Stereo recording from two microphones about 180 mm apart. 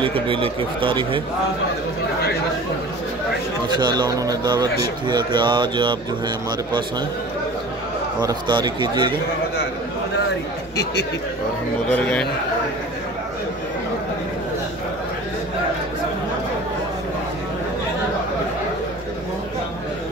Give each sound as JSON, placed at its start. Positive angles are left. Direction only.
{"t": 0.0, "sound": "a man's voice", "side_deg": -30}
{"t": 3.6, "sound": "a man's voice", "side_deg": -25}
{"t": 8.2, "sound": "a man's voice", "side_deg": -25}
{"t": 11.9, "sound": "a man's voice", "side_deg": 5}